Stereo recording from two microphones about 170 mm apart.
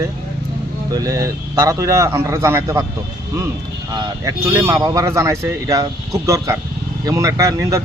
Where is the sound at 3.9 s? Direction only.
20° right (ahead or behind).